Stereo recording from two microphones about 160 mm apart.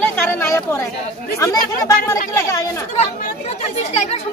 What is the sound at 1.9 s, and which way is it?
Speech, 20° left (ahead or behind).